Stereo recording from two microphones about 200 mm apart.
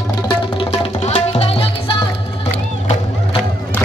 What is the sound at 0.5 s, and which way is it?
Music, 30° left (ahead or behind).